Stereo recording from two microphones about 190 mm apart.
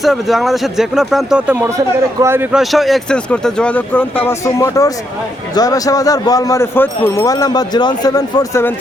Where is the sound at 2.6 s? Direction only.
Centre (ahead or behind).